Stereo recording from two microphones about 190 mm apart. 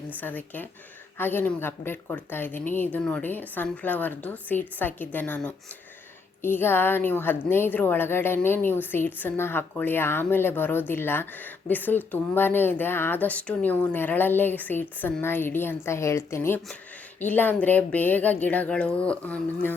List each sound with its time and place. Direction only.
0.2 s a woman's voice: 10° left (ahead or behind)